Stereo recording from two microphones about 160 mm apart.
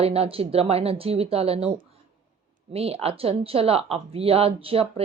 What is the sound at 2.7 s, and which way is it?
Speech, 40° right (ahead or behind).